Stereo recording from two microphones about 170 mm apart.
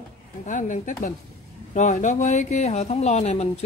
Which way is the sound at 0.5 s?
50° left (ahead or behind).